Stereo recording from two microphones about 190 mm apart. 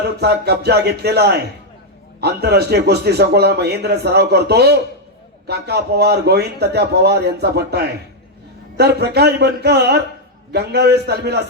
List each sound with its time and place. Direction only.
0.2 s a man's voice: 60° right (ahead or behind)